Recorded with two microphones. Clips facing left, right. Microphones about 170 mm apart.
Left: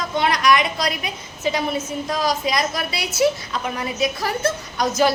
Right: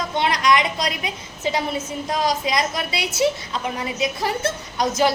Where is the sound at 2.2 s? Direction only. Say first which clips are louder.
Even; 20° right (ahead or behind).